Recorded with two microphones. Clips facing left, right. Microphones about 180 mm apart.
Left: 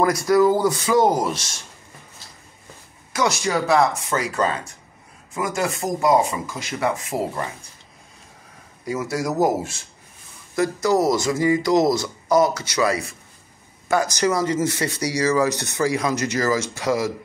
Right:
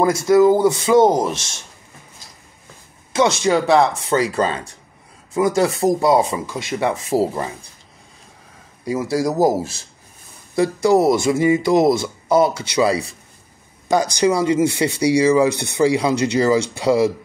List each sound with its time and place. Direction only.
0.0 s speech: 25° right (ahead or behind)
3.1 s speech: 25° right (ahead or behind)
8.8 s speech: 30° right (ahead or behind)
13.9 s speech: 15° right (ahead or behind)
15.8 s speech: 30° right (ahead or behind)